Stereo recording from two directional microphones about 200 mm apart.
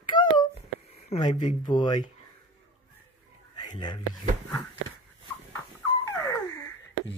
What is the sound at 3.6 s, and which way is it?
Whispering, 25° left (ahead or behind).